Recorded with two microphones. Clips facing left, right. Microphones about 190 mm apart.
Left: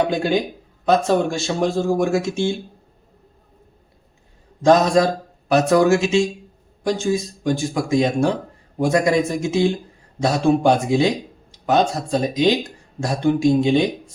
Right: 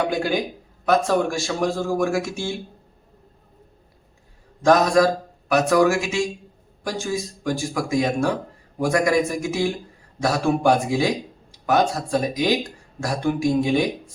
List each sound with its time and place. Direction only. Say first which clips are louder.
0.1 s speech: left 3 dB; 25° left (ahead or behind)
4.6 s speech: left 2 dB; 20° left (ahead or behind)